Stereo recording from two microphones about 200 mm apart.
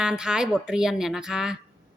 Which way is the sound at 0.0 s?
5° right (ahead or behind).